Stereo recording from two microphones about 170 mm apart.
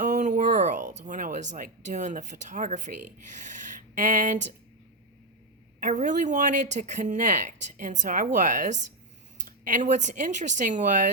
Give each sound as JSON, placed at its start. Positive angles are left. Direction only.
{"t": 0.0, "sound": "a sound", "side_deg": -45}
{"t": 3.4, "sound": "speech", "side_deg": -45}
{"t": 5.8, "sound": "speech", "side_deg": -45}